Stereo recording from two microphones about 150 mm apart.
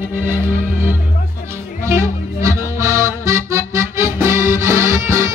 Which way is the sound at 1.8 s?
20° right (ahead or behind).